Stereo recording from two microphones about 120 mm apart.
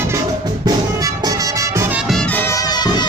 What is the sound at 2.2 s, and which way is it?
Music, 15° left (ahead or behind).